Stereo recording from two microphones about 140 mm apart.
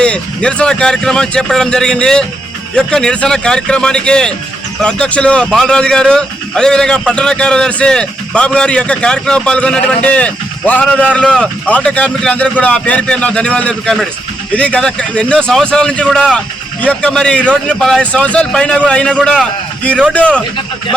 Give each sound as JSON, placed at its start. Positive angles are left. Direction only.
{"t": 0.0, "sound": "a man's voice", "side_deg": 5}
{"t": 19.8, "sound": "a man's voice", "side_deg": 10}